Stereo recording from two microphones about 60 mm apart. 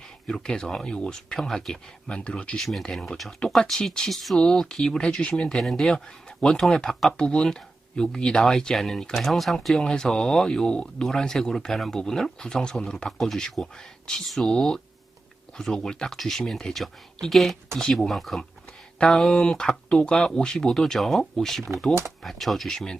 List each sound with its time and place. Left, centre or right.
0.3 s speech: centre
2.6 s speech: centre